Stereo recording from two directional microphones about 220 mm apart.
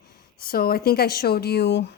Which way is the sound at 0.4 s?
45° left (ahead or behind).